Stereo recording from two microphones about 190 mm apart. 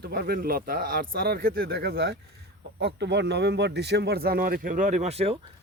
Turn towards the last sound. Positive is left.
turn(degrees=-35)  # may be behind; listen again after turning